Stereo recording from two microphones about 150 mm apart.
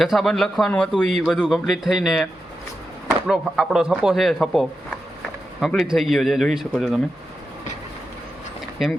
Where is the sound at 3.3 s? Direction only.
5° right (ahead or behind).